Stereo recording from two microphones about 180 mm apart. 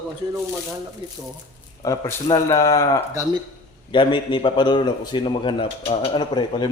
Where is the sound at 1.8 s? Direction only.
20° left (ahead or behind).